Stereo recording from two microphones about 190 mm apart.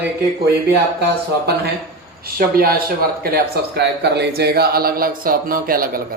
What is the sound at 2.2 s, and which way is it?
Speech, 50° right (ahead or behind).